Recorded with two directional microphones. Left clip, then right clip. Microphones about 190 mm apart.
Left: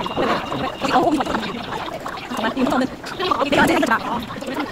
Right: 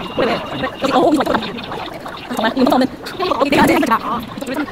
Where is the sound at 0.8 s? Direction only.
15° right (ahead or behind).